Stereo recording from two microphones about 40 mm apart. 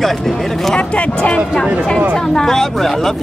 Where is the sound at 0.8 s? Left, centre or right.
Left.